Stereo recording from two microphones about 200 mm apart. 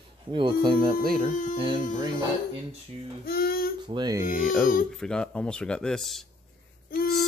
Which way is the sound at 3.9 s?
20° right (ahead or behind).